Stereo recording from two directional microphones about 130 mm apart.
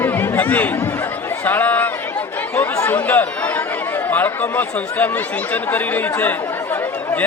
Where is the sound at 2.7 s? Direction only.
25° left (ahead or behind).